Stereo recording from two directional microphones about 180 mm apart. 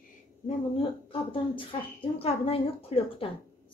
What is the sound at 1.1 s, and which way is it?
A woman's voice, 30° left (ahead or behind).